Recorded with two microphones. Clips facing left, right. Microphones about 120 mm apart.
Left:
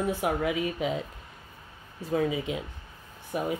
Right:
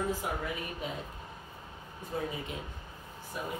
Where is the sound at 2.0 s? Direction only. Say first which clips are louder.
Left 9 dB; 90° left.